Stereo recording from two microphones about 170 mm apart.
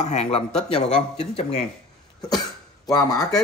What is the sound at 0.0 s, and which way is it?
Speech, 40° left (ahead or behind).